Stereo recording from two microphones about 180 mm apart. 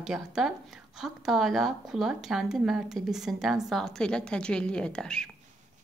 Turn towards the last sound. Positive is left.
turn(degrees=5)  # may be behind; listen again after turning